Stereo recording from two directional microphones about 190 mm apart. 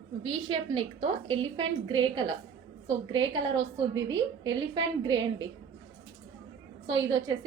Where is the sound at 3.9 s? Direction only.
20° right (ahead or behind).